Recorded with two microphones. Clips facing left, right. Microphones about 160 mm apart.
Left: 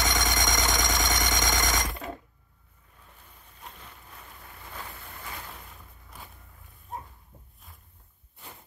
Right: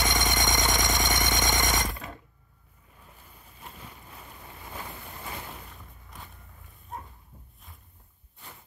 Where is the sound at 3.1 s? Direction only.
5° right (ahead or behind).